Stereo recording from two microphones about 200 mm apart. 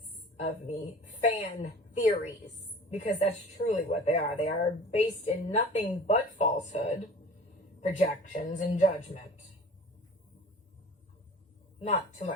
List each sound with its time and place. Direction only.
0.3 s a woman's voice: 35° left (ahead or behind)
11.8 s a woman's voice: 35° left (ahead or behind)